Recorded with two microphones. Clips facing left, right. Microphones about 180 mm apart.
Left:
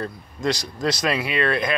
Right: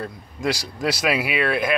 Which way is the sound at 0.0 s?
10° right (ahead or behind).